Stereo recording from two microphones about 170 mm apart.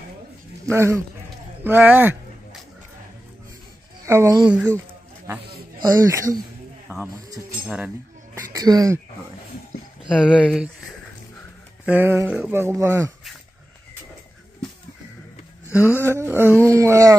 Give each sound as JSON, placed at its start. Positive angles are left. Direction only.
{"t": 0.7, "sound": "speech", "side_deg": -15}
{"t": 4.0, "sound": "speech", "side_deg": -15}
{"t": 4.5, "sound": "a sound", "side_deg": -10}
{"t": 5.8, "sound": "speech", "side_deg": -20}
{"t": 7.6, "sound": "speech", "side_deg": -5}
{"t": 8.4, "sound": "speech", "side_deg": -20}
{"t": 10.4, "sound": "speech", "side_deg": 0}
{"t": 11.8, "sound": "speech", "side_deg": -10}
{"t": 15.7, "sound": "speech", "side_deg": -10}